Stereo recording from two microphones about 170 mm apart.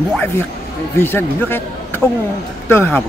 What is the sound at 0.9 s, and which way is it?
A man's voice, 15° left (ahead or behind).